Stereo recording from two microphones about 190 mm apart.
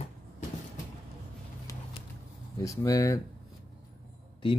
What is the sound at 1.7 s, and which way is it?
Vehicle, 15° left (ahead or behind).